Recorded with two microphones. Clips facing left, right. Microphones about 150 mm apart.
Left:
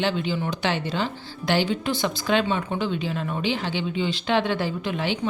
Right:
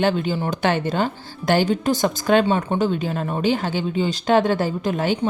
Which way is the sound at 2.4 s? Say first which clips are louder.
Right 5 dB; 35° right (ahead or behind).